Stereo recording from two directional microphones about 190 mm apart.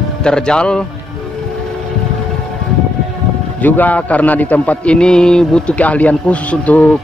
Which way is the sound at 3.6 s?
10° left (ahead or behind).